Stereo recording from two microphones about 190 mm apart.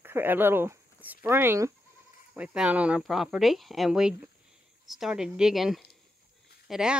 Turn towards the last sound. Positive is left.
turn(degrees=-5)  # may be behind; listen again after turning